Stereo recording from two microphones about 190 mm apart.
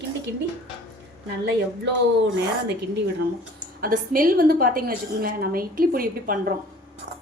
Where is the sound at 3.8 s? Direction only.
50° right (ahead or behind).